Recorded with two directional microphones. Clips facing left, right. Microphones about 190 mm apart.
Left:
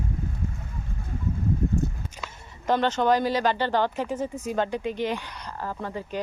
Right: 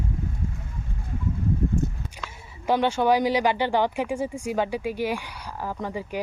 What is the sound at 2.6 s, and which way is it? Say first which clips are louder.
Speech: right 1 dB; 10° right (ahead or behind).